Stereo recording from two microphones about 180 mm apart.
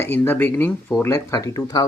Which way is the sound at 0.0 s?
10° left (ahead or behind).